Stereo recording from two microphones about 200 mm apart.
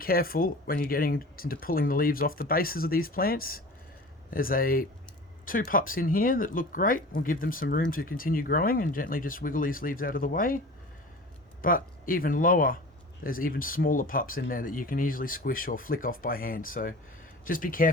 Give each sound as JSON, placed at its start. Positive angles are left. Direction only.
{"t": 0.0, "sound": "speech", "side_deg": 50}
{"t": 11.6, "sound": "speech", "side_deg": 45}